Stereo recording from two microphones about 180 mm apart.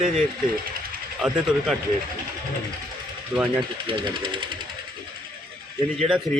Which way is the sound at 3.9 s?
25° right (ahead or behind).